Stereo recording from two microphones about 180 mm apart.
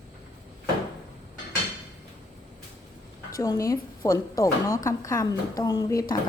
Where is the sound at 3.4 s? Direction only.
20° left (ahead or behind).